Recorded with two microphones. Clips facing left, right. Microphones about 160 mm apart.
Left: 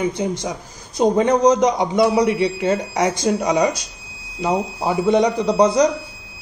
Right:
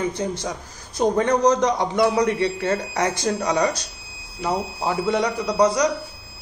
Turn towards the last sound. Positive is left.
turn(degrees=25)  # may be behind; listen again after turning